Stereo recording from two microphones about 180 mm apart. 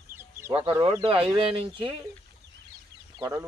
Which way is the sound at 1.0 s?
30° right (ahead or behind).